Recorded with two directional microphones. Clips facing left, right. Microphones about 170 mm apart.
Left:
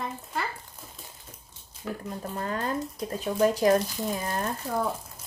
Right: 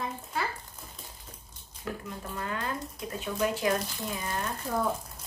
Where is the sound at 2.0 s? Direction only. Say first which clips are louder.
Left 4 dB; 40° left (ahead or behind).